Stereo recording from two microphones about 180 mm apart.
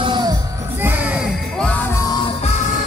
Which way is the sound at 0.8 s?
10° right (ahead or behind).